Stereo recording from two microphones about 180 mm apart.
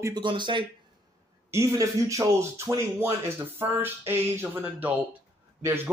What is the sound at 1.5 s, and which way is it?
Speech, 15° right (ahead or behind).